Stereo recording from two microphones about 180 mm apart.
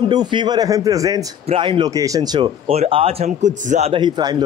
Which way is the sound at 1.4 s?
30° right (ahead or behind).